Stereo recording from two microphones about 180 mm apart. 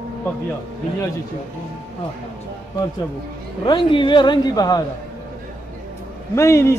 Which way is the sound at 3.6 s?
25° left (ahead or behind).